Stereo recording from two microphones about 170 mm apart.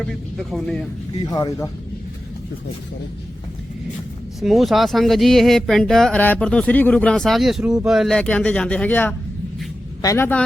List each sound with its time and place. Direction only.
0.0 s speech: centre (ahead or behind)
1.2 s speech: 20° left (ahead or behind)
4.4 s speech: centre (ahead or behind)